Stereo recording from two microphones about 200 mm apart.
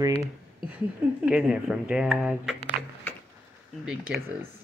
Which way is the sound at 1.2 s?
5° right (ahead or behind).